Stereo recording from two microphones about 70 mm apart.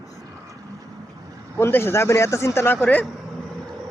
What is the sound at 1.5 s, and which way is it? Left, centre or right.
A man's voice, left.